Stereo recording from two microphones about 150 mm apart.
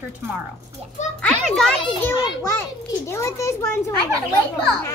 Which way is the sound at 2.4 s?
20° left (ahead or behind).